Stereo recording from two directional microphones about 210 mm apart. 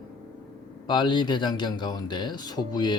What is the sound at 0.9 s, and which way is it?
Speech, 20° left (ahead or behind).